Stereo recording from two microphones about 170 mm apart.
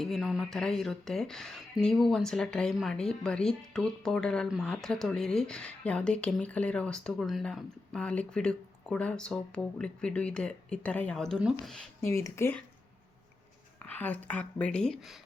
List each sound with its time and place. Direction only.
0.0 s speech: centre (ahead or behind)
11.9 s speech: 15° left (ahead or behind)
13.8 s speech: 10° left (ahead or behind)